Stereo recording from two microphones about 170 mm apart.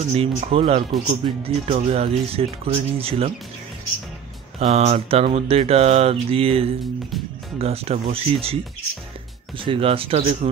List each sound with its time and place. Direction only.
0.1 s speech: 35° right (ahead or behind)
4.6 s speech: 40° right (ahead or behind)
9.7 s speech: 35° right (ahead or behind)